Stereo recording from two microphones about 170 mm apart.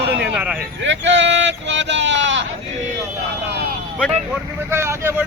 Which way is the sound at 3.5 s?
70° right (ahead or behind).